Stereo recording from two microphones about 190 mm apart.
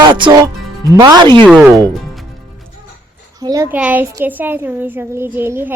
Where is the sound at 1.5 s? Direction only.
5° right (ahead or behind).